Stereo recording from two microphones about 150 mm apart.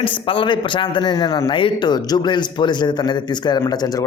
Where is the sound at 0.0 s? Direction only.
35° left (ahead or behind).